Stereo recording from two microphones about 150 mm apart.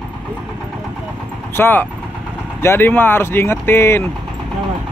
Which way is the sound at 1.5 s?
15° left (ahead or behind).